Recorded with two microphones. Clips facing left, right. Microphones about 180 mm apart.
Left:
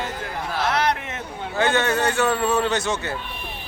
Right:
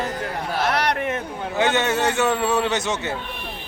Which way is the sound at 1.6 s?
20° right (ahead or behind).